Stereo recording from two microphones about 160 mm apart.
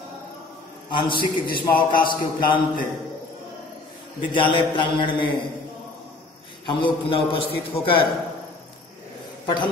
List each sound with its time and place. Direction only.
0.8 s a man's voice: 30° left (ahead or behind)
4.3 s a man's voice: 30° left (ahead or behind)
6.6 s a man's voice: 30° left (ahead or behind)